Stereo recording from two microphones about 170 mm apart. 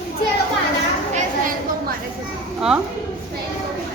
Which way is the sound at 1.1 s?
55° right (ahead or behind).